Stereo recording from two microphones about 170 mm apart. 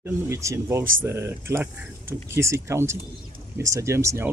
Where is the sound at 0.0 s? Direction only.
15° right (ahead or behind).